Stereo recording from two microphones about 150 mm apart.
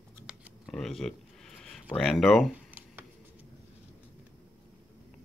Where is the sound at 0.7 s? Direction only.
Centre (ahead or behind).